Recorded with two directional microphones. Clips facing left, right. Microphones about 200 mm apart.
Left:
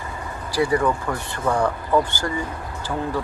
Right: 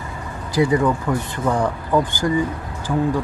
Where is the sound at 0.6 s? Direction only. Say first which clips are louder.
Right 3 dB; 20° right (ahead or behind).